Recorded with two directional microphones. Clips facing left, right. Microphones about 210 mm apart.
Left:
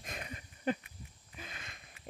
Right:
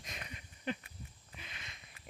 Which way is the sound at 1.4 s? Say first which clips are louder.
Left 5 dB; 50° left (ahead or behind).